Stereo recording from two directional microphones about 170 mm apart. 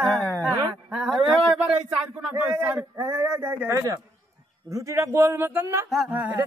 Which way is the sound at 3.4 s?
15° right (ahead or behind).